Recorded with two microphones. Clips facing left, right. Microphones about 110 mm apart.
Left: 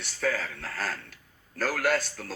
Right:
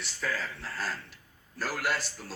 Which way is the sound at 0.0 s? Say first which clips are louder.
Left 5 dB; 65° left (ahead or behind).